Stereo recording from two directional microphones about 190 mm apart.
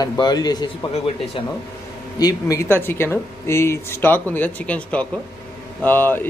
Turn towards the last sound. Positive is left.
turn(degrees=10)  # may be behind; listen again after turning